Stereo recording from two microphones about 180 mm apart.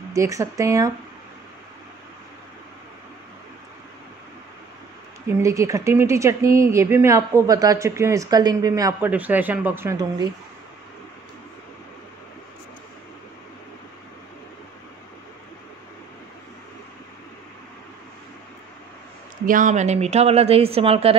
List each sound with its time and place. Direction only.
0.1 s speech: 20° right (ahead or behind)
5.4 s speech: 15° right (ahead or behind)
9.1 s speech: 10° right (ahead or behind)
19.4 s speech: 45° right (ahead or behind)